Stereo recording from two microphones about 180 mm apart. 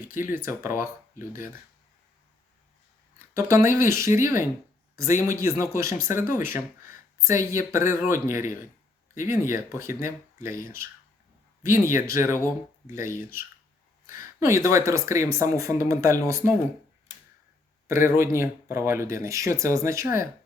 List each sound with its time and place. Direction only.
0.2 s speech: 10° right (ahead or behind)
3.3 s speech: 15° right (ahead or behind)
11.6 s speech: 15° right (ahead or behind)
17.8 s speech: 15° right (ahead or behind)